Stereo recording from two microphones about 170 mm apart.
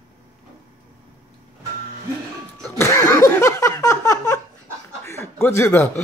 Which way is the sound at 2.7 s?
15° left (ahead or behind).